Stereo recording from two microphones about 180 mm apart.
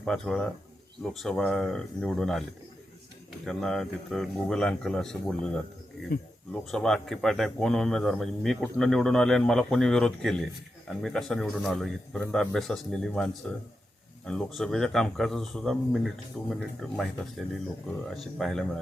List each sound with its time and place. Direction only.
0.0 s speech: 5° left (ahead or behind)
3.4 s speech: 5° left (ahead or behind)
6.1 s speech: 60° left (ahead or behind)
6.5 s speech: 5° left (ahead or behind)
17.8 s speech: centre (ahead or behind)